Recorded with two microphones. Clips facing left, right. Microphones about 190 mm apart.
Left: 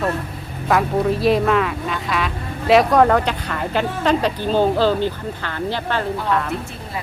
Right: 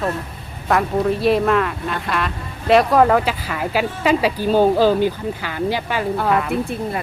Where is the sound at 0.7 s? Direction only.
Centre (ahead or behind).